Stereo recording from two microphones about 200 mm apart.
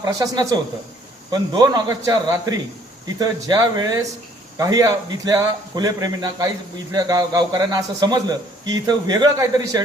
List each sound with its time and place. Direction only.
0.0 s a man's voice: 20° right (ahead or behind)